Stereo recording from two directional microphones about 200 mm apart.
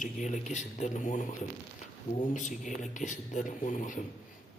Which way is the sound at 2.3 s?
40° left (ahead or behind).